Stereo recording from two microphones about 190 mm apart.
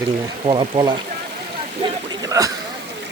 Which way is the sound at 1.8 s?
20° right (ahead or behind).